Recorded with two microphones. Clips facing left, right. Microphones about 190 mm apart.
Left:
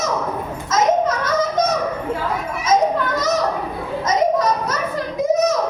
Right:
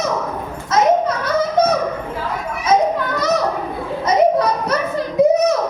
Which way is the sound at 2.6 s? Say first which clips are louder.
Right 1 dB; 60° right (ahead or behind).